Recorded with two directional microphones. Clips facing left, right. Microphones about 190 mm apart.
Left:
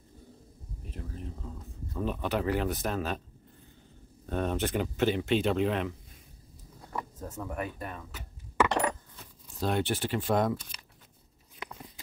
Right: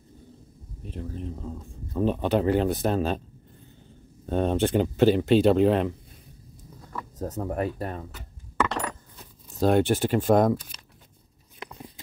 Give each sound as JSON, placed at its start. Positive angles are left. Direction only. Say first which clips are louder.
{"t": 0.8, "sound": "speech", "louder": "right 7 dB", "side_deg": -30}
{"t": 4.3, "sound": "speech", "louder": "right 7 dB", "side_deg": -30}
{"t": 7.2, "sound": "speech", "louder": "right 11 dB", "side_deg": -40}
{"t": 9.6, "sound": "speech", "louder": "right 8 dB", "side_deg": -45}